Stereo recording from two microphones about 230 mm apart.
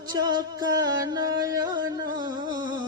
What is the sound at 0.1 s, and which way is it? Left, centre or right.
Music, centre.